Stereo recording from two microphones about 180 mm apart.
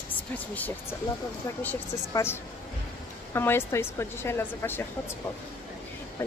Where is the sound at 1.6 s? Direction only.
15° left (ahead or behind).